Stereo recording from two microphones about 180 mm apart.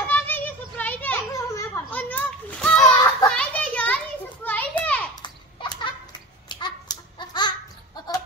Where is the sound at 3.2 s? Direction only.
5° left (ahead or behind).